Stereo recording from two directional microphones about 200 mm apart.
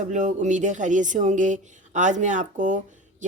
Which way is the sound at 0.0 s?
40° right (ahead or behind).